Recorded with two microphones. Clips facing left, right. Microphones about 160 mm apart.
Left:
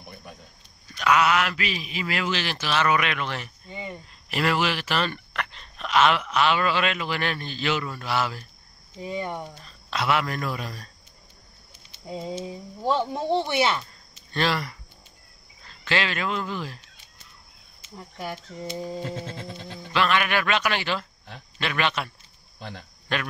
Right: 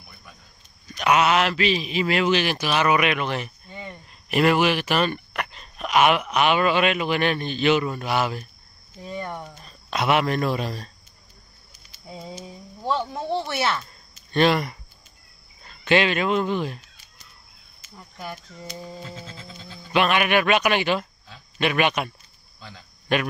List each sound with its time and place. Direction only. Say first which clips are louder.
0.1 s cricket: left 7 dB; 50° left (ahead or behind)
0.9 s a man's voice: right 2 dB; 20° right (ahead or behind)
3.6 s cricket: left 2 dB; 15° left (ahead or behind)
4.3 s speech: right 5 dB; 20° right (ahead or behind)
9.0 s speech: left 2 dB; 15° left (ahead or behind)
9.7 s a man's voice: right 3 dB; 20° right (ahead or behind)
11.7 s speech: left 5 dB; 25° left (ahead or behind)
14.3 s a man's voice: right 6 dB; 20° right (ahead or behind)
17.9 s speech: left 2 dB; 15° left (ahead or behind)
18.3 s a sound: left 4 dB; 25° left (ahead or behind)
19.0 s music: left 6 dB; 55° left (ahead or behind)
19.9 s speech: right 3 dB; 20° right (ahead or behind)
22.6 s speech: left 5 dB; 60° left (ahead or behind)
23.1 s speech: right 6 dB; 15° right (ahead or behind)